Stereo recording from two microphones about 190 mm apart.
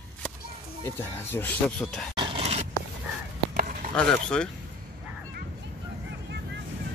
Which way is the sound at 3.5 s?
45° right (ahead or behind).